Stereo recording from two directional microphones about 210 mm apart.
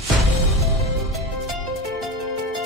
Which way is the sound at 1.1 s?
Centre (ahead or behind).